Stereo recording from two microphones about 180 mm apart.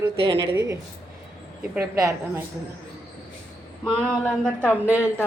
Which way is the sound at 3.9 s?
5° left (ahead or behind).